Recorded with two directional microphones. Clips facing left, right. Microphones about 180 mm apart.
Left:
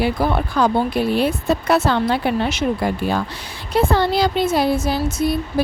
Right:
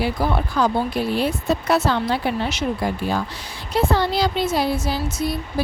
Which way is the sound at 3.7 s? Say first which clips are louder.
Left 3 dB; 55° left (ahead or behind).